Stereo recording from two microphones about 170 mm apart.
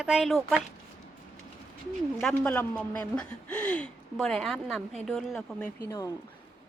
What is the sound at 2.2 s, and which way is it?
Speech, 5° left (ahead or behind).